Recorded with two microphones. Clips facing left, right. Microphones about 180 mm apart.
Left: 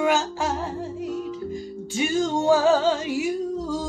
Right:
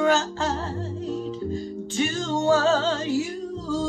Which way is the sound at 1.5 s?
10° left (ahead or behind).